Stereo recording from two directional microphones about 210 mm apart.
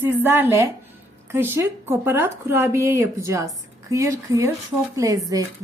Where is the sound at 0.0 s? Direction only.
10° right (ahead or behind).